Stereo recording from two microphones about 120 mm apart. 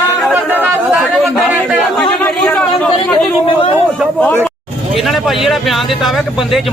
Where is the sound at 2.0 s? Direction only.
10° left (ahead or behind).